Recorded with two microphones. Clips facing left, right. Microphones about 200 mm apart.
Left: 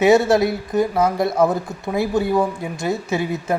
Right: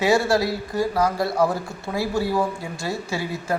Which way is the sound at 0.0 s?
20° left (ahead or behind).